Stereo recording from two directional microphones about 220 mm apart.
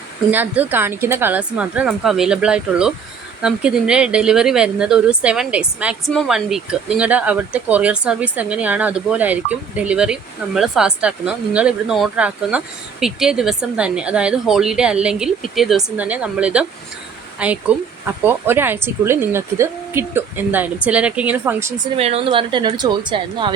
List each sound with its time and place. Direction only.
0.3 s speech: 5° right (ahead or behind)
21.9 s a woman's voice: 25° right (ahead or behind)